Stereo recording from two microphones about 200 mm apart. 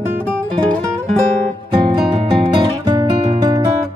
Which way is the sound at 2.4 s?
25° right (ahead or behind).